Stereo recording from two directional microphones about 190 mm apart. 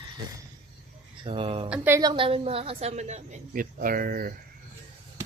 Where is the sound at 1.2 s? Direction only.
30° right (ahead or behind).